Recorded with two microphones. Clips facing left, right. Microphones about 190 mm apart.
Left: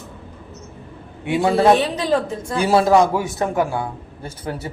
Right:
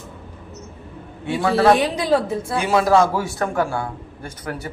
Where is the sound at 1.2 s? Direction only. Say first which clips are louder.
Left 1 dB; 20° left (ahead or behind).